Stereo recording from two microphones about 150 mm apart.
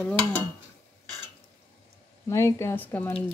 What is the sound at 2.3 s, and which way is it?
Speech, 20° left (ahead or behind).